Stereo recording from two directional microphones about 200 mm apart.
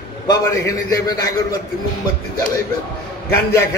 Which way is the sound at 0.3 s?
20° left (ahead or behind).